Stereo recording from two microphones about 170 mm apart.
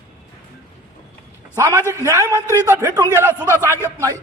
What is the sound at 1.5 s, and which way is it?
A man's voice, 20° right (ahead or behind).